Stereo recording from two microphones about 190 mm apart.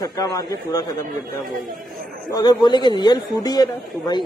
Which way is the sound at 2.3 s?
20° left (ahead or behind).